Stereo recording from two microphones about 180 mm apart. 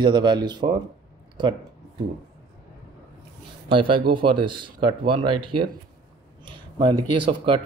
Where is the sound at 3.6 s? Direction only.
30° right (ahead or behind).